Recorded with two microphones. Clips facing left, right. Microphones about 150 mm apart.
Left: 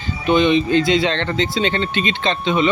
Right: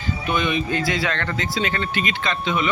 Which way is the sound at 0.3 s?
25° left (ahead or behind).